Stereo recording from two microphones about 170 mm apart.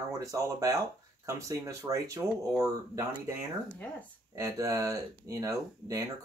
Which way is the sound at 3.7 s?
10° left (ahead or behind).